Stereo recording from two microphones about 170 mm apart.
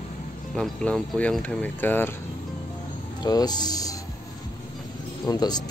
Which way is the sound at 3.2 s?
25° left (ahead or behind).